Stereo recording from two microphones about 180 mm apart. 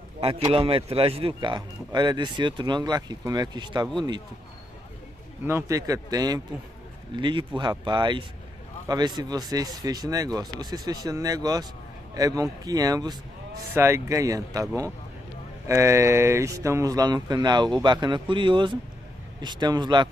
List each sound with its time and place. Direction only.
0.2 s speech: 30° right (ahead or behind)
5.4 s speech: 15° right (ahead or behind)